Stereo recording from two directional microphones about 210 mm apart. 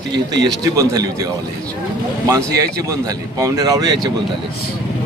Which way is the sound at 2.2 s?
15° right (ahead or behind).